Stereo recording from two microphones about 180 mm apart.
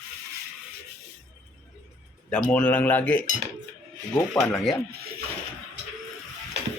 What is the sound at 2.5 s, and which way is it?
Speech, 10° left (ahead or behind).